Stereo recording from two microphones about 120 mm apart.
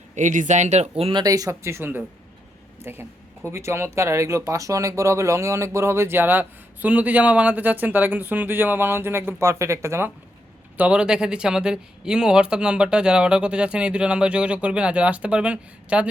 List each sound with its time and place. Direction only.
0.2 s speech: 90° right; by 1.1 s 60° right (ahead or behind)
1.1 s speech: 30° right (ahead or behind)
10.8 s speech: 10° right (ahead or behind)